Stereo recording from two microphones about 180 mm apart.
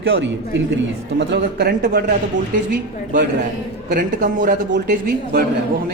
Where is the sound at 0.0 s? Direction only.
85° right.